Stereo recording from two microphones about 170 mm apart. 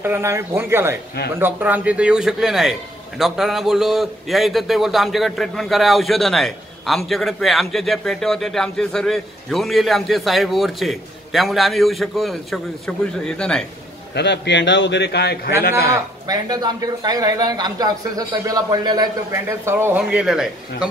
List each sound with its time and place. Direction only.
0.0 s a man's voice: 15° right (ahead or behind); by 13.7 s 5° left (ahead or behind)
14.1 s a man's voice: 90° left
16.3 s speech: 25° right (ahead or behind); by 20.9 s 5° right (ahead or behind)